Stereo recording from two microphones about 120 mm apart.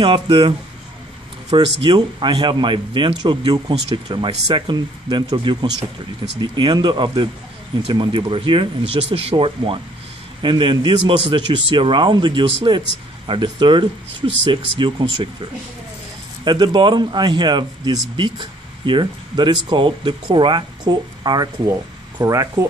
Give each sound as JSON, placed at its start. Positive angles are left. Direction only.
{"t": 0.0, "sound": "speech", "side_deg": -45}
{"t": 16.4, "sound": "speech", "side_deg": -40}